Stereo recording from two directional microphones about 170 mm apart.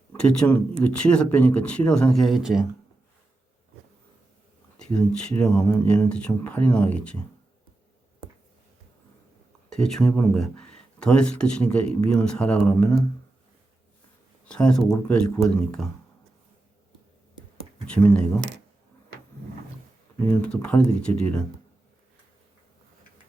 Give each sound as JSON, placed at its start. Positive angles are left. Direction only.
{"t": 0.2, "sound": "speech", "side_deg": 5}
{"t": 4.8, "sound": "speech", "side_deg": 5}
{"t": 9.6, "sound": "speech", "side_deg": 5}
{"t": 14.4, "sound": "speech", "side_deg": 5}
{"t": 17.8, "sound": "speech", "side_deg": 5}
{"t": 18.3, "sound": "speech", "side_deg": -90}
{"t": 20.1, "sound": "speech", "side_deg": 10}